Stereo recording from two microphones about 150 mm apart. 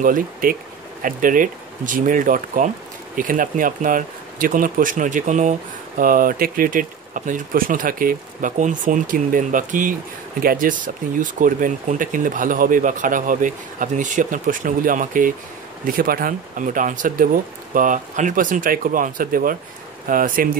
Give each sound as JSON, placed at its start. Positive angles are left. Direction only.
{"t": 0.0, "sound": "speech", "side_deg": -65}